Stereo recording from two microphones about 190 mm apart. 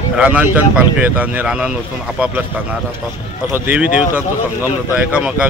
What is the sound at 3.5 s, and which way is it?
Speech, 10° right (ahead or behind).